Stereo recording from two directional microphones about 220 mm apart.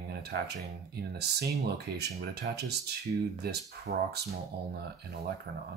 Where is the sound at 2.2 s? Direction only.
50° right (ahead or behind).